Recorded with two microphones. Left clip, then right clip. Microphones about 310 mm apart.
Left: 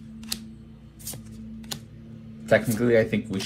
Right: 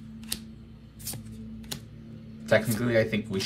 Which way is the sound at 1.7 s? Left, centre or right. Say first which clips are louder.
Left 3 dB; centre.